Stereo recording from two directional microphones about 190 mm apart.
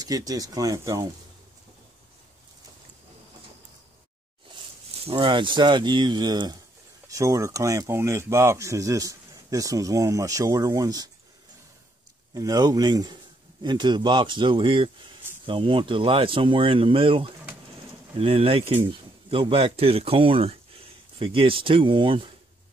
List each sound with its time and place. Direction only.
0.0 s speech: 20° right (ahead or behind)
5.0 s speech: 30° right (ahead or behind)
12.4 s speech: 20° right (ahead or behind)